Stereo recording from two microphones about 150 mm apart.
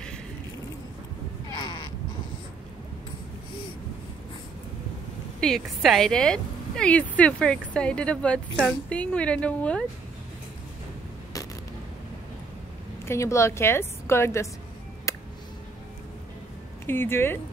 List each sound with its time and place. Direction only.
5.4 s a woman's voice: centre (ahead or behind)
13.0 s a woman's voice: 20° left (ahead or behind)
15.1 s music: 20° left (ahead or behind)
16.8 s a woman's voice: 15° left (ahead or behind)